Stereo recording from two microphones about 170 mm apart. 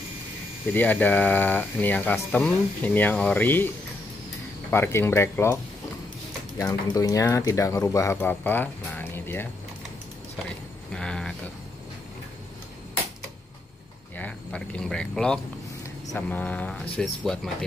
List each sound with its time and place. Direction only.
0.7 s speech: 10° left (ahead or behind)
6.6 s speech: 20° left (ahead or behind)
10.9 s speech: 5° left (ahead or behind)
14.1 s speech: 10° left (ahead or behind)